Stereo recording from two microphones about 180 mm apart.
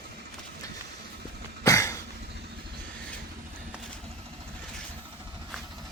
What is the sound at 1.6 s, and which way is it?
Cough, 15° left (ahead or behind).